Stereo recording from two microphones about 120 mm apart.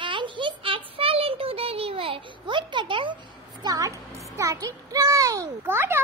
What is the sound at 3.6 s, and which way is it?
A child's voice, 30° right (ahead or behind).